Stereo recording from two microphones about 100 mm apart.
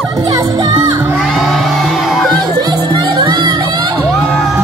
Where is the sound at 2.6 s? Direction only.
45° right (ahead or behind).